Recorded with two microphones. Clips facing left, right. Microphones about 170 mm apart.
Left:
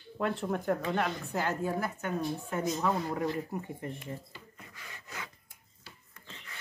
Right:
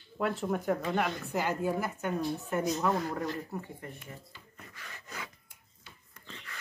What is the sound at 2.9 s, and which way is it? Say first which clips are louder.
Speech: even; 10° left (ahead or behind).